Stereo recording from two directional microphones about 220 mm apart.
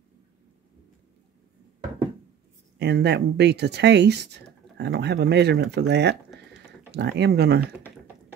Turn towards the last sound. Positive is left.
turn(degrees=-45)  # may be behind; listen again after turning